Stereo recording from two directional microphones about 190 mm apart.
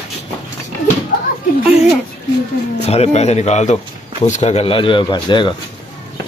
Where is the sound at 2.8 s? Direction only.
35° left (ahead or behind).